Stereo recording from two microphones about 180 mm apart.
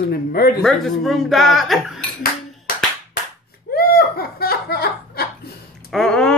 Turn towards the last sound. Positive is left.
turn(degrees=5)  # may be behind; listen again after turning